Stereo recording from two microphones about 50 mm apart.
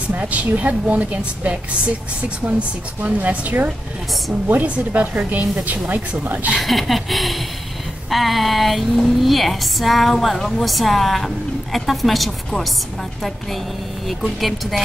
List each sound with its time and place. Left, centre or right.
0.2 s a woman's voice: right
3.0 s a woman's voice: right
6.5 s a woman's voice: centre
14.0 s a woman's voice: centre